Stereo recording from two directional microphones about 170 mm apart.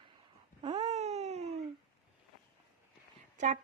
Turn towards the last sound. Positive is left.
turn(degrees=-45)  # may be behind; listen again after turning